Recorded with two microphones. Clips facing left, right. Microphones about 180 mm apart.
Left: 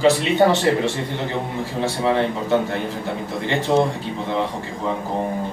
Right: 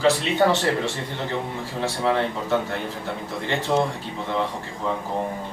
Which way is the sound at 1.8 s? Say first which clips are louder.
Left 3 dB; 20° left (ahead or behind).